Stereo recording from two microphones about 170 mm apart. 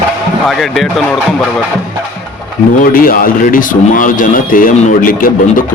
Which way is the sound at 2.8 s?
55° left (ahead or behind).